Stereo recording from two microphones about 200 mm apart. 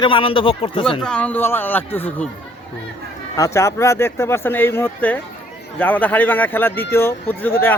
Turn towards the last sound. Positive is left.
turn(degrees=10)  # may be behind; listen again after turning